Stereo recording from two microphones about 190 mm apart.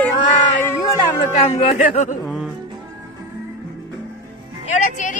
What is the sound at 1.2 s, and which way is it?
Speech, 35° left (ahead or behind).